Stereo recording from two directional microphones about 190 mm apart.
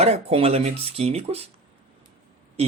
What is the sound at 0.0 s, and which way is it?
Speech, 30° right (ahead or behind).